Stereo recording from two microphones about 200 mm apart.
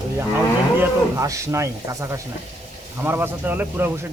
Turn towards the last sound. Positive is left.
turn(degrees=-10)  # may be behind; listen again after turning